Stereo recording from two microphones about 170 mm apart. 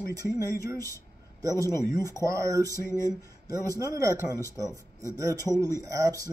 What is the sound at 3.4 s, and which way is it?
Speech, 20° right (ahead or behind).